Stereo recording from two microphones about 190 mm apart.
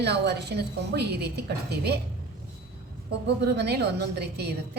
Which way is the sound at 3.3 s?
60° right (ahead or behind).